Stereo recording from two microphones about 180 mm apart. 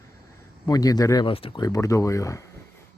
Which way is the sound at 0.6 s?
20° left (ahead or behind).